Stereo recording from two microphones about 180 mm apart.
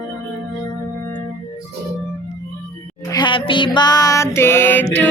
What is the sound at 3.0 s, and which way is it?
Music, 25° left (ahead or behind).